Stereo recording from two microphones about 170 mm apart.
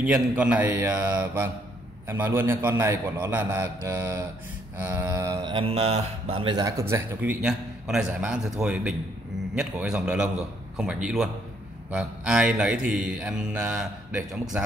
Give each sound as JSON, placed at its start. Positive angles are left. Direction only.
{"t": 0.0, "sound": "a man's voice", "side_deg": -5}
{"t": 5.5, "sound": "a man's voice", "side_deg": -35}